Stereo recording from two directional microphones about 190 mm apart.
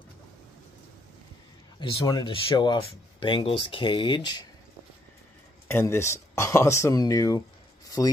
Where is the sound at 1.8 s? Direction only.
20° left (ahead or behind).